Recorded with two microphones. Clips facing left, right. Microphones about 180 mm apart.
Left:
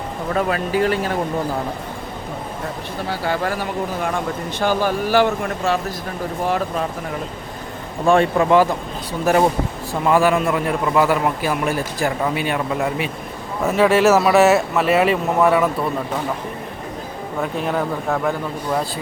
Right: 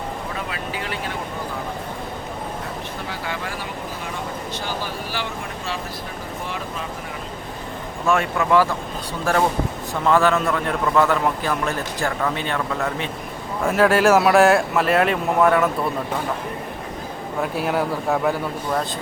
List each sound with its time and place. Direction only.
0.3 s speech: 45° left (ahead or behind)
3.1 s speech: 40° left (ahead or behind)
8.0 s speech: 30° left (ahead or behind)
9.9 s a man's voice: 10° left (ahead or behind)
13.6 s speech: 5° left (ahead or behind)
17.4 s speech: 5° right (ahead or behind)